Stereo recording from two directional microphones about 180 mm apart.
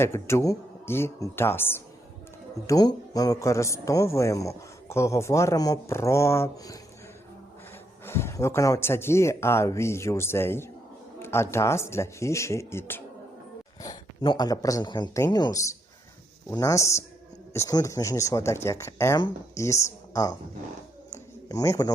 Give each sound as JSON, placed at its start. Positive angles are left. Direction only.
{"t": 0.0, "sound": "a man's voice", "side_deg": 15}
{"t": 8.0, "sound": "a man's voice", "side_deg": 15}
{"t": 21.1, "sound": "a sound", "side_deg": 20}